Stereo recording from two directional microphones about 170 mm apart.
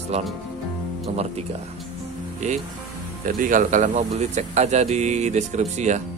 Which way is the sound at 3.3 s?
50° right (ahead or behind).